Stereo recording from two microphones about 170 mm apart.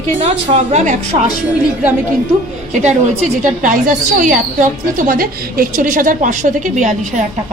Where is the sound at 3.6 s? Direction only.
50° right (ahead or behind).